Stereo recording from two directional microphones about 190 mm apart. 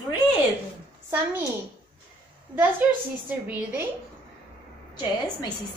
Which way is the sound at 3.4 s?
10° right (ahead or behind).